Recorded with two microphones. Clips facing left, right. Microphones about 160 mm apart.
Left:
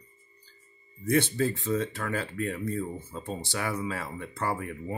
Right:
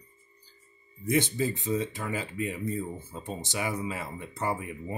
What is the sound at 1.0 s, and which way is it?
Speech, 15° right (ahead or behind).